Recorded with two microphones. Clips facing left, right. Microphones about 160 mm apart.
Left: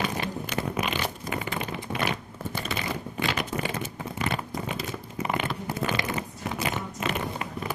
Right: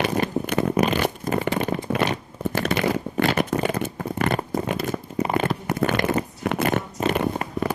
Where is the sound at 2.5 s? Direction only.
70° right (ahead or behind).